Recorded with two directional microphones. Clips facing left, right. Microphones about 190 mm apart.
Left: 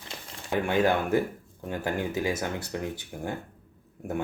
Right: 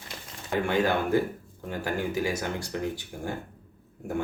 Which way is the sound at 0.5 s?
20° left (ahead or behind).